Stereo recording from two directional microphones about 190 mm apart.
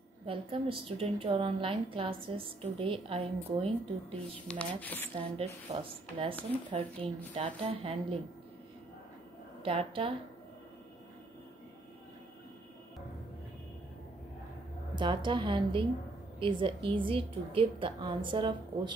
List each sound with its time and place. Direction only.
0.3 s a woman's voice: 30° right (ahead or behind)
4.5 s speech: 5° left (ahead or behind)
5.1 s a woman's voice: 30° right (ahead or behind)
9.6 s a woman's voice: 30° right (ahead or behind)
15.0 s a woman's voice: 25° right (ahead or behind)